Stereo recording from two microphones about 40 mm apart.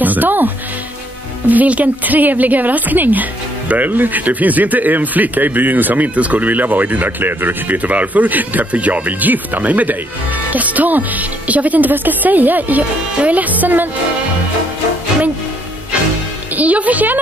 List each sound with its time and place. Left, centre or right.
0.0 s music: right
1.5 s a woman's voice: right
6.1 s a woman's voice: right
16.5 s a woman's voice: right